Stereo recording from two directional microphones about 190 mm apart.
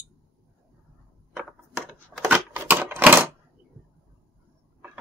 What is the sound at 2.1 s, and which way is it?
Typewriter, 5° right (ahead or behind).